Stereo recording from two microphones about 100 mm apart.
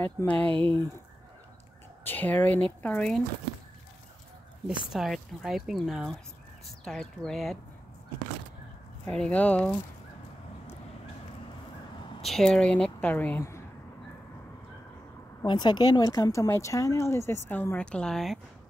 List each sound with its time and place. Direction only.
0.0 s a woman's voice: 15° left (ahead or behind)
2.0 s a woman's voice: 15° left (ahead or behind)
4.6 s speech: 5° right (ahead or behind)
9.0 s a woman's voice: 10° left (ahead or behind)
12.2 s a woman's voice: 5° left (ahead or behind)
15.4 s speech: 45° left (ahead or behind); by 18.4 s centre (ahead or behind)